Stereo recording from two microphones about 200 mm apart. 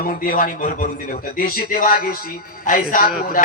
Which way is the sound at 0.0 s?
45° left (ahead or behind).